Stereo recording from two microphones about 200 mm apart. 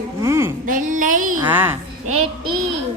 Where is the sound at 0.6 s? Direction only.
40° right (ahead or behind).